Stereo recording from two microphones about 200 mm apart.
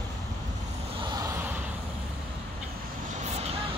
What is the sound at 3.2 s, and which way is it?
Vehicle, 35° right (ahead or behind).